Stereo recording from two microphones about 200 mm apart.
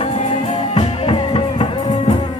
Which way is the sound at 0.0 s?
35° left (ahead or behind).